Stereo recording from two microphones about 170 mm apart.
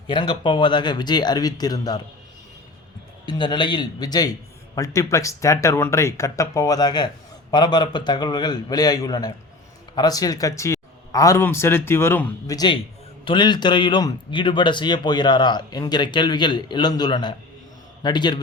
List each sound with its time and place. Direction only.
0.1 s speech: 30° left (ahead or behind)
3.2 s speech: 25° left (ahead or behind)
12.5 s speech: 25° left (ahead or behind)